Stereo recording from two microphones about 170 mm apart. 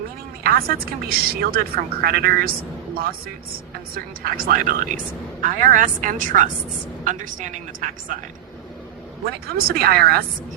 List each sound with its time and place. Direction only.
0.4 s a woman's voice: 60° right (ahead or behind)
9.2 s a woman's voice: 65° right (ahead or behind)